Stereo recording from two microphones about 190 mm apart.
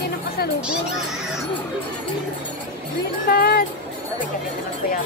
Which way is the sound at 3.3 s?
55° left (ahead or behind).